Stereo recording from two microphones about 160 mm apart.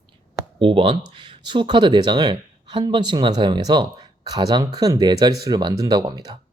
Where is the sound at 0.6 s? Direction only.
35° right (ahead or behind).